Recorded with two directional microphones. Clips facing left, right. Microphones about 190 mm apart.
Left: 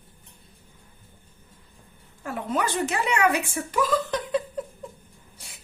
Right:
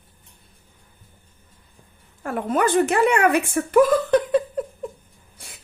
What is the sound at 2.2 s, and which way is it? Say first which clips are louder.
Speech: right 6 dB; 55° right (ahead or behind).